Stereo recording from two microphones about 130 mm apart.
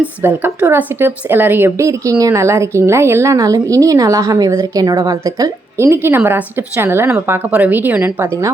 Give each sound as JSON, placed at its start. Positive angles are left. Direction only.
{"t": 0.0, "sound": "a woman's voice", "side_deg": -15}